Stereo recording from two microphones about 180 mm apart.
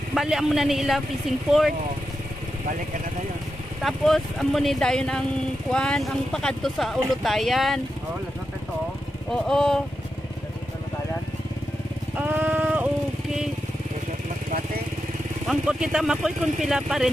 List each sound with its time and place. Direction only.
0.1 s speech: centre (ahead or behind)
3.8 s speech: centre (ahead or behind)
9.3 s speech: 5° left (ahead or behind)
12.2 s music: 10° right (ahead or behind)
15.4 s speech: 5° right (ahead or behind)